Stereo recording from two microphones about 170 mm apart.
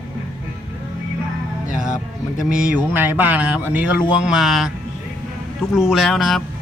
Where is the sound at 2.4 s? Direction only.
10° right (ahead or behind).